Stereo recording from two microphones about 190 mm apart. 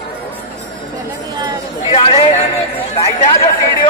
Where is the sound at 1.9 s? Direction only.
30° left (ahead or behind).